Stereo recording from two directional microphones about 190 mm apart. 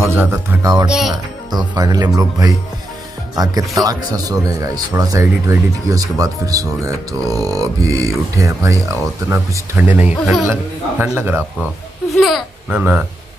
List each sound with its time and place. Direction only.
0.0 s speech: 15° right (ahead or behind)
0.8 s speech: centre (ahead or behind)
1.6 s speech: 20° right (ahead or behind)
3.7 s speech: 20° right (ahead or behind)
9.9 s speech: 5° right (ahead or behind)
12.1 s speech: centre (ahead or behind)